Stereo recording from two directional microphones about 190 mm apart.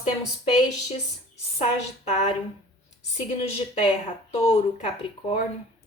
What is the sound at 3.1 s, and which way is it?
A woman's voice, 35° left (ahead or behind).